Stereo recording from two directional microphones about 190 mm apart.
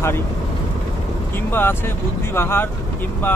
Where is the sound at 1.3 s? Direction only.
10° left (ahead or behind).